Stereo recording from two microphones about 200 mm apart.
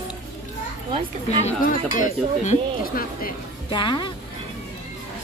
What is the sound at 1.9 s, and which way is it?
Speech, 40° left (ahead or behind).